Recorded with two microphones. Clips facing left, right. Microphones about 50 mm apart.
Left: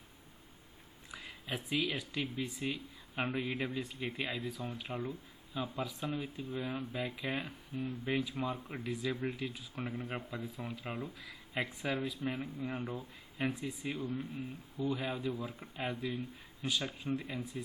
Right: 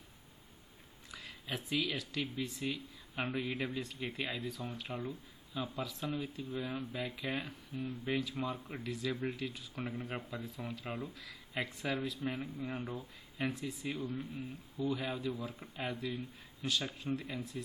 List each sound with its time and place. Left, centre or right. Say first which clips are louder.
1.1 s speech: left 1 dB; centre
12.7 s speech: left 1 dB; left